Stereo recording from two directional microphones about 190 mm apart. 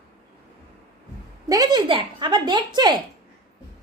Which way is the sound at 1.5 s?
20° right (ahead or behind).